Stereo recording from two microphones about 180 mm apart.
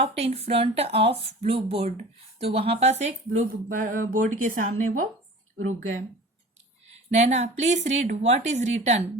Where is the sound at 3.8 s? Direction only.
45° right (ahead or behind).